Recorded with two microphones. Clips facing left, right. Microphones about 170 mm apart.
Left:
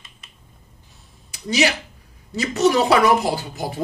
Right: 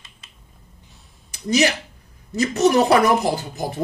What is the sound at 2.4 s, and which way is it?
Speech, 45° right (ahead or behind).